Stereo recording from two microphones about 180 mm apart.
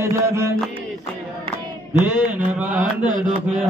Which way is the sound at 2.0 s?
10° right (ahead or behind).